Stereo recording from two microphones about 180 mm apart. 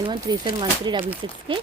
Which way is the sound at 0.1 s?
25° right (ahead or behind).